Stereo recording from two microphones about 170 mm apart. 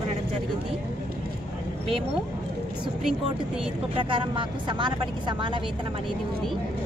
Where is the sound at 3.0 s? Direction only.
Centre (ahead or behind).